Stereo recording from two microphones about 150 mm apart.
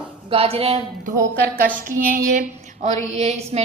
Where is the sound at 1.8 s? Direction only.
65° right (ahead or behind).